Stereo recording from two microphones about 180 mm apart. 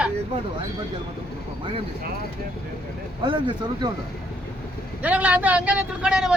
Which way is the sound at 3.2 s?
25° right (ahead or behind).